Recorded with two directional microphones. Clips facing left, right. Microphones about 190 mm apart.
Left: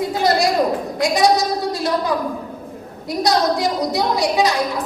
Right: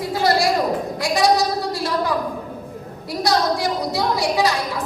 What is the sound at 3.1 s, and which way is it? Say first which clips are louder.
A woman's voice: left 2 dB; 20° left (ahead or behind).